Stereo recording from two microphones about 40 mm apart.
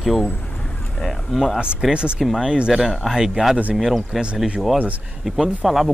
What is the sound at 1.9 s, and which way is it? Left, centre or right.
Speech, right.